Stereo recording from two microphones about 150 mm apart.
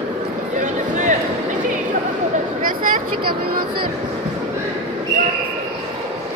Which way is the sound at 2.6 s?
65° right (ahead or behind).